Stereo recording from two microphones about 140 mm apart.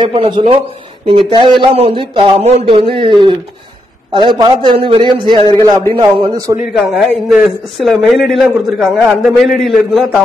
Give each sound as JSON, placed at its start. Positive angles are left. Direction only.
{"t": 0.0, "sound": "a man's voice", "side_deg": -35}
{"t": 6.7, "sound": "a man's voice", "side_deg": 0}